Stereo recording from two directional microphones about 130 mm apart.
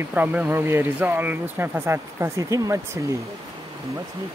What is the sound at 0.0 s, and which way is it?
Speech, 15° right (ahead or behind).